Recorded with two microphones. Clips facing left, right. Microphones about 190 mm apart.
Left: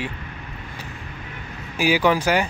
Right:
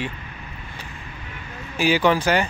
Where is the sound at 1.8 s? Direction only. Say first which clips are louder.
Even; 10° left (ahead or behind).